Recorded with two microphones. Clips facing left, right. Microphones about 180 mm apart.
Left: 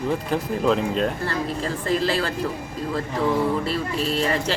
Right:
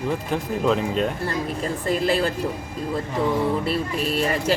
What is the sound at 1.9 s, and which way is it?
Speech, 15° right (ahead or behind).